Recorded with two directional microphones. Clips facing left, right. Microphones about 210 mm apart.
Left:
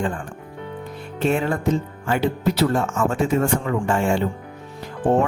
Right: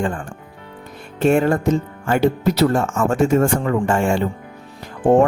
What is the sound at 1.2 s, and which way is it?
Speech, 50° right (ahead or behind).